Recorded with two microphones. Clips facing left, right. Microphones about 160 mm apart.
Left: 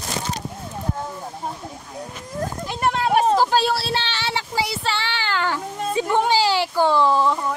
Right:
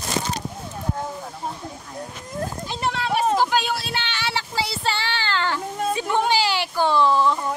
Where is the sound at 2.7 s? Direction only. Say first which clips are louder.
Left 6 dB; 50° left (ahead or behind).